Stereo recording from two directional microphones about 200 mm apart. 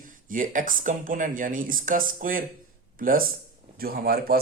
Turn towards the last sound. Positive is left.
turn(degrees=-50)  # may be behind; listen again after turning